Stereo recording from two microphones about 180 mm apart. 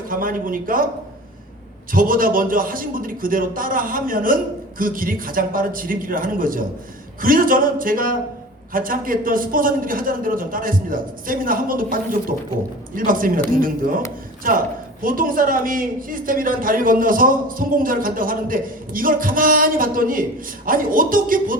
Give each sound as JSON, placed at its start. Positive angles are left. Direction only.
{"t": 0.1, "sound": "a man's voice", "side_deg": -50}
{"t": 1.9, "sound": "a man's voice", "side_deg": -50}
{"t": 13.1, "sound": "a man's voice", "side_deg": -50}